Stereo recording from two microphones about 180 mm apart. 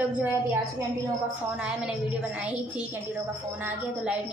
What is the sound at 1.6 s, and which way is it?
A woman's voice, 5° right (ahead or behind).